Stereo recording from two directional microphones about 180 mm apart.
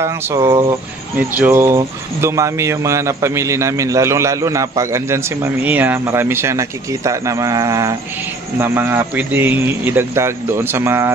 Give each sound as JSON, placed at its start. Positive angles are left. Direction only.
{"t": 0.0, "sound": "speech", "side_deg": -15}